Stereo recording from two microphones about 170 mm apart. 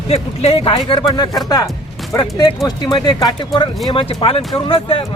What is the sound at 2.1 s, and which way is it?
A man's voice, 25° left (ahead or behind).